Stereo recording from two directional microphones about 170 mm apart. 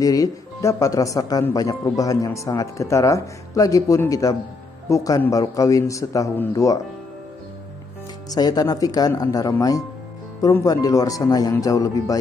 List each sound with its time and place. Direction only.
0.0 s speech: 20° left (ahead or behind)
8.3 s speech: 20° left (ahead or behind)